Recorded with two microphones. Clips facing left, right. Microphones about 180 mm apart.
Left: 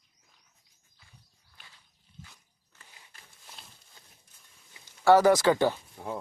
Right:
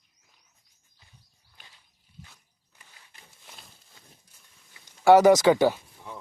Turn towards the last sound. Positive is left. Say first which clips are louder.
# right 4 dB
turn(degrees=-10)  # may be behind; listen again after turning